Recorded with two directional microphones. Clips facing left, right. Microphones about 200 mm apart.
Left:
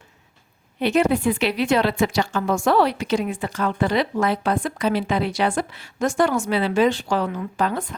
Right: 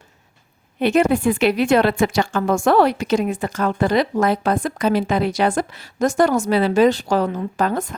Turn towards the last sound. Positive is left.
turn(degrees=-45)  # may be behind; listen again after turning